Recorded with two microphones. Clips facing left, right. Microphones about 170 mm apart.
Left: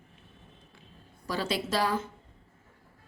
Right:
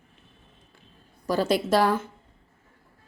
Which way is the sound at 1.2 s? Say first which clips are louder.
Right 8 dB; 45° right (ahead or behind).